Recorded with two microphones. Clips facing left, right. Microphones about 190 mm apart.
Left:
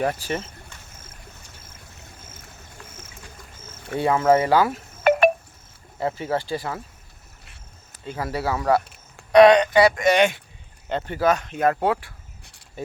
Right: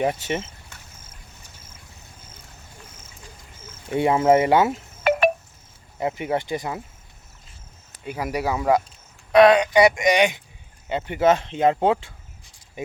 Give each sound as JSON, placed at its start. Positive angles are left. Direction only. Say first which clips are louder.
{"t": 0.0, "sound": "speech", "louder": "right 1 dB", "side_deg": -20}
{"t": 3.8, "sound": "speech", "louder": "right 1 dB", "side_deg": -20}
{"t": 5.1, "sound": "wind chime", "louder": "left 2 dB", "side_deg": 50}
{"t": 6.0, "sound": "speech", "louder": "right 1 dB", "side_deg": -15}
{"t": 8.0, "sound": "speech", "louder": "right 1 dB", "side_deg": -15}
{"t": 9.3, "sound": "speech", "louder": "left 1 dB", "side_deg": 0}
{"t": 9.7, "sound": "speech", "louder": "even", "side_deg": -15}